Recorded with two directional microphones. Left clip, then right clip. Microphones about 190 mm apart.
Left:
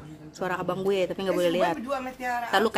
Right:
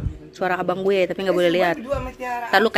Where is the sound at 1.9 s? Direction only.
25° right (ahead or behind).